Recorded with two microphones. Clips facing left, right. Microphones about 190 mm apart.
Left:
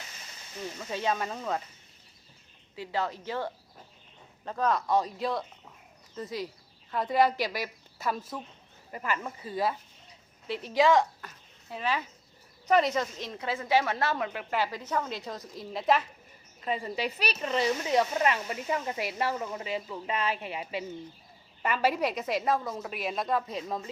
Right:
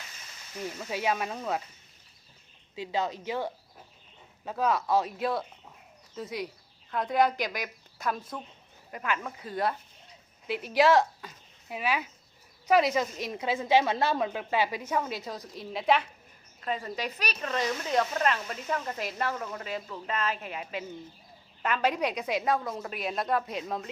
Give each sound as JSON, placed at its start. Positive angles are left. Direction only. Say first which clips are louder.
{"t": 0.8, "sound": "a woman's voice", "louder": "even", "side_deg": -10}
{"t": 2.7, "sound": "a woman's voice", "louder": "right 1 dB", "side_deg": -20}
{"t": 11.2, "sound": "a sound", "louder": "right 2 dB", "side_deg": -15}
{"t": 12.6, "sound": "a woman's voice", "louder": "right 1 dB", "side_deg": -5}